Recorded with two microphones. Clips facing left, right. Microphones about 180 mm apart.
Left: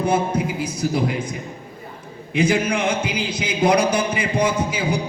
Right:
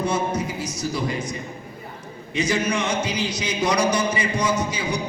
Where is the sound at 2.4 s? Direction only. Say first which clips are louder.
Left 4 dB; 55° left (ahead or behind).